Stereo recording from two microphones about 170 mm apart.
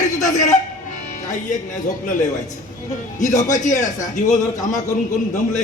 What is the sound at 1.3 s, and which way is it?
Speech, 45° left (ahead or behind).